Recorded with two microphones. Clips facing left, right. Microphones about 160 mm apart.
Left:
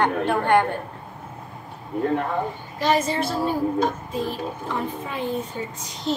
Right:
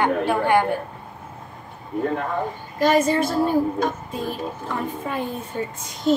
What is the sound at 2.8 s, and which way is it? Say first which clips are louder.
Speech: right 4 dB; 45° right (ahead or behind).